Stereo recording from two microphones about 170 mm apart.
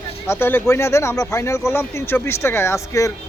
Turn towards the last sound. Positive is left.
turn(degrees=15)  # may be behind; listen again after turning